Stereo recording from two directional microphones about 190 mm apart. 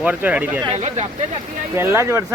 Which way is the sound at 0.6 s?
35° right (ahead or behind).